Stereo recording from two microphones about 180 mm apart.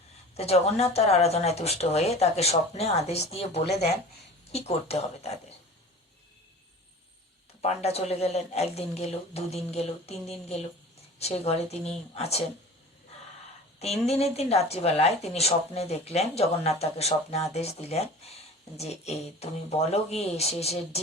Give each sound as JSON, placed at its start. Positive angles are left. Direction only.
{"t": 0.3, "sound": "speech", "side_deg": 35}
{"t": 7.6, "sound": "speech", "side_deg": 35}
{"t": 14.0, "sound": "speech", "side_deg": 35}